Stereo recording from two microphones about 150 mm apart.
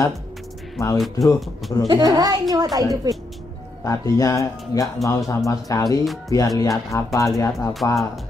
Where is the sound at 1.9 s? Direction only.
25° right (ahead or behind).